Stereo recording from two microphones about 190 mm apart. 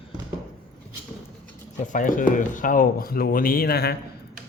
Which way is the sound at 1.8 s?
45° left (ahead or behind).